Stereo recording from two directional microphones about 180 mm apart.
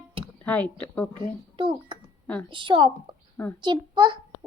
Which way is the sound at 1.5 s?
30° right (ahead or behind).